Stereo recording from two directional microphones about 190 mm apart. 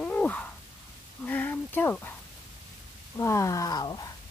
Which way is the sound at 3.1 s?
15° left (ahead or behind).